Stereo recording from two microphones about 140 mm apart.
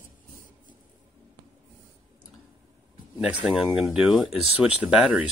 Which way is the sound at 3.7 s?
10° right (ahead or behind).